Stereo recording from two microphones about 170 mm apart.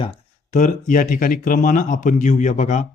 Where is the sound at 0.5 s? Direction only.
50° left (ahead or behind).